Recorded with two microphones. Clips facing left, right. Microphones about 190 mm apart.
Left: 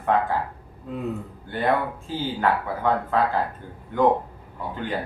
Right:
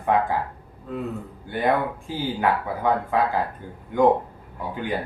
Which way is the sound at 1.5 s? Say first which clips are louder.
Right 1 dB; 15° right (ahead or behind).